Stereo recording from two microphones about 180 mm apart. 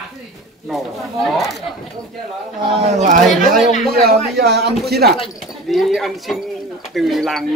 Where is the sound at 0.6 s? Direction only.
Centre (ahead or behind).